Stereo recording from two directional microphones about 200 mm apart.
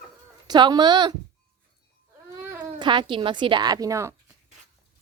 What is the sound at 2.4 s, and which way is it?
Speech, 15° right (ahead or behind).